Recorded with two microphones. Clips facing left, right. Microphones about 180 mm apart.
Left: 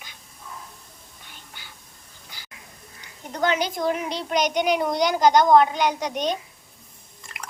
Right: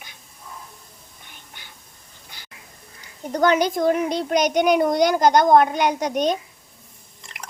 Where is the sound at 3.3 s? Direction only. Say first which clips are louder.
Right 5 dB; 45° right (ahead or behind).